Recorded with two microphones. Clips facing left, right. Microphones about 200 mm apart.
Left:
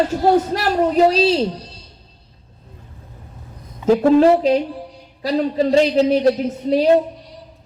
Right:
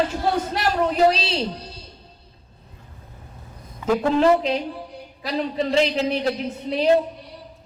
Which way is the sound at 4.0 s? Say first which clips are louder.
Left 5 dB; 40° left (ahead or behind).